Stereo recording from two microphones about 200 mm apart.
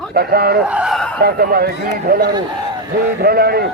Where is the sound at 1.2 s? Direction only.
50° right (ahead or behind).